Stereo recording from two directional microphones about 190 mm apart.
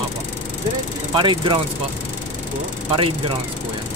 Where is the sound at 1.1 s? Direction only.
25° right (ahead or behind).